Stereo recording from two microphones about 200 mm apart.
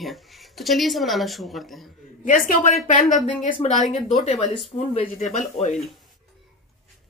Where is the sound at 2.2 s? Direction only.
40° left (ahead or behind).